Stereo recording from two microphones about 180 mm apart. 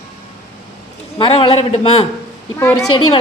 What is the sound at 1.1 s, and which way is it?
A man's voice, 30° left (ahead or behind).